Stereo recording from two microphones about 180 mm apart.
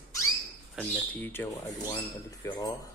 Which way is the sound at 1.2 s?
10° left (ahead or behind).